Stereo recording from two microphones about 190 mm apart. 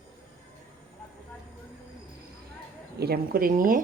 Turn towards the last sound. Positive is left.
turn(degrees=-45)  # may be behind; listen again after turning